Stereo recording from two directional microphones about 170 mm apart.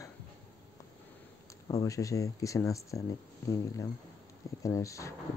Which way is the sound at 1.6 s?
20° left (ahead or behind).